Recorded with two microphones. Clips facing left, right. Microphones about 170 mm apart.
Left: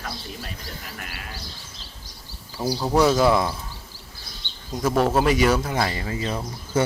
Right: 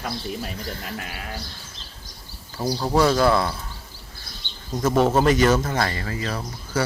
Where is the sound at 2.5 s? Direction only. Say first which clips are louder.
Even; 5° left (ahead or behind).